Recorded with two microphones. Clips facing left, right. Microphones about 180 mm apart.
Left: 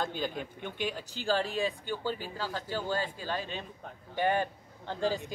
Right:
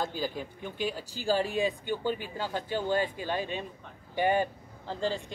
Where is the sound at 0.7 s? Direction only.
40° right (ahead or behind).